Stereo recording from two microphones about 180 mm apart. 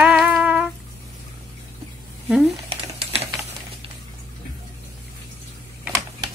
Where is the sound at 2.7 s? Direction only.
35° right (ahead or behind).